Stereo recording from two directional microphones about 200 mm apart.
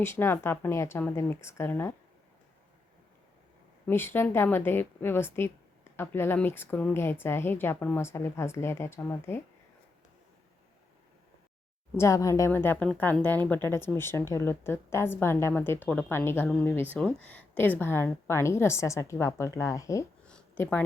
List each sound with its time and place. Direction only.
0.0 s a woman's voice: 10° left (ahead or behind)
3.8 s a woman's voice: 10° left (ahead or behind)
11.9 s a woman's voice: 15° left (ahead or behind)
20.2 s a sound: 5° left (ahead or behind)